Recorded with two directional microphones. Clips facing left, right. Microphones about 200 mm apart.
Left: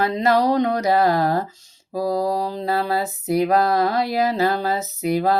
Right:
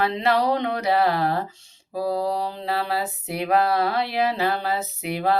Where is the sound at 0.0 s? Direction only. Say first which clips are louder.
Left 3 dB; 45° left (ahead or behind).